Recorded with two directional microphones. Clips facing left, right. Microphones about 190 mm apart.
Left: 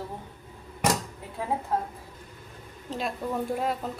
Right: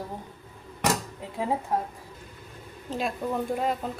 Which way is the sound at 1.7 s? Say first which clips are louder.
Left 1 dB; 15° right (ahead or behind).